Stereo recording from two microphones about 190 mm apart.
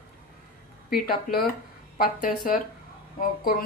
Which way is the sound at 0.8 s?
50° left (ahead or behind).